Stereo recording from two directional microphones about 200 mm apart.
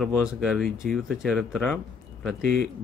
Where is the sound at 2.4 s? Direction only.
45° right (ahead or behind).